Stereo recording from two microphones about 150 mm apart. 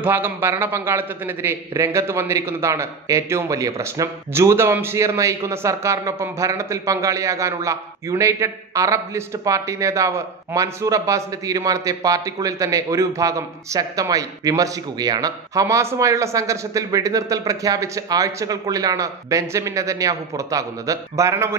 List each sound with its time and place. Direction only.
0.0 s a man's voice: 15° right (ahead or behind)